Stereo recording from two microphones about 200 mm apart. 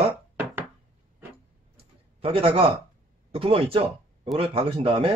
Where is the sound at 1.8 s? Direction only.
30° right (ahead or behind).